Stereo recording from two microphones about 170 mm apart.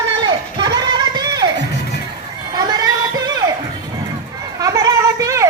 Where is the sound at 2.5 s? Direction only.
25° right (ahead or behind).